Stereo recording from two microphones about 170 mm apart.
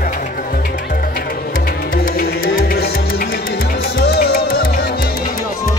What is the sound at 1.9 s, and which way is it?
Music, 65° left (ahead or behind).